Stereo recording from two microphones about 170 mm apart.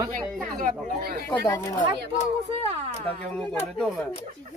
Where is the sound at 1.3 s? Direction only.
15° left (ahead or behind).